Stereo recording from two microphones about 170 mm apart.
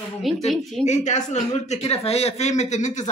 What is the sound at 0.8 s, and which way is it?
Speech, 45° left (ahead or behind).